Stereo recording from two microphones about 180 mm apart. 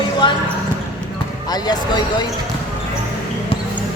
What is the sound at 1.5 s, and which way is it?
Speech, 25° left (ahead or behind).